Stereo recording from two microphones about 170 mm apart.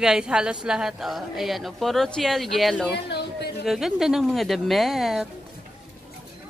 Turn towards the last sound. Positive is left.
turn(degrees=0)  # may be behind; listen again after turning